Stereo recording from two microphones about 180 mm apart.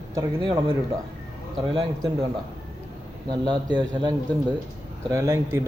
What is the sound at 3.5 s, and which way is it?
A man's voice, 25° right (ahead or behind).